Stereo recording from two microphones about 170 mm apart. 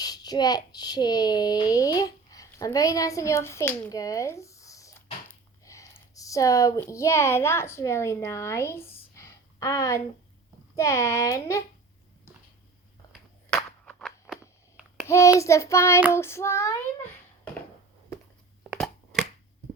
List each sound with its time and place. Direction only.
0.0 s speech: 25° left (ahead or behind)
13.5 s a sound: 5° left (ahead or behind)
15.0 s child singing: 15° left (ahead or behind)
15.4 s speech: 15° left (ahead or behind)